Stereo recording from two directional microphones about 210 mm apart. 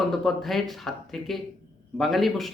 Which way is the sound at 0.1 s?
Centre (ahead or behind).